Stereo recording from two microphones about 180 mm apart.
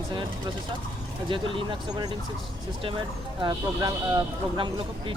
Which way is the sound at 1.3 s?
30° right (ahead or behind).